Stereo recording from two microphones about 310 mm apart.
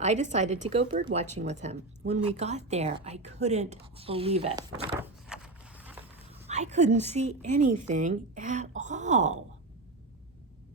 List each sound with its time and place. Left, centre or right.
0.0 s speech: right
4.9 s a sound: centre
6.5 s a woman's voice: right